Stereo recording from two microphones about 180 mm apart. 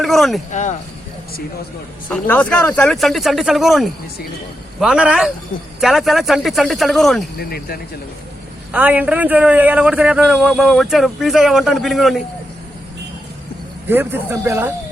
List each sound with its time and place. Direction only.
0.0 s a man's voice: centre (ahead or behind)
0.5 s speech: 40° left (ahead or behind)
2.0 s a man's voice: 10° left (ahead or behind)
7.3 s speech: 60° left (ahead or behind)
8.7 s a man's voice: 10° right (ahead or behind)
13.8 s speech: 10° right (ahead or behind)